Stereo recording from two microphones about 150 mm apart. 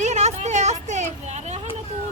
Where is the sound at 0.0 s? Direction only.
50° right (ahead or behind).